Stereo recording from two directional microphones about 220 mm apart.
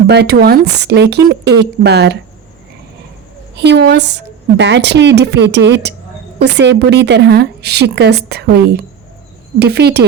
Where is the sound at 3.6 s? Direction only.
50° right (ahead or behind).